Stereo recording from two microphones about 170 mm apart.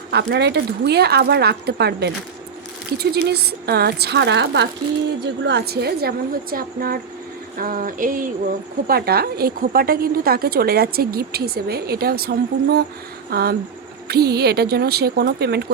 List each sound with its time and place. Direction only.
0.1 s speech: 75° right (ahead or behind); by 7.0 s 60° right (ahead or behind)
7.6 s a sound: 55° right (ahead or behind)
8.9 s a woman's voice: 65° right (ahead or behind)